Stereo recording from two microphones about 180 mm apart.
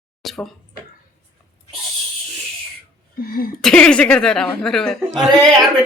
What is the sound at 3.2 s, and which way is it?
Speech, 55° left (ahead or behind).